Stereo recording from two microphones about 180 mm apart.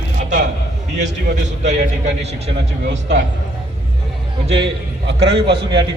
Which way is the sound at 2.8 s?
75° right (ahead or behind).